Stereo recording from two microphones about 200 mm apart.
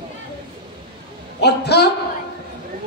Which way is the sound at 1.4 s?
55° left (ahead or behind).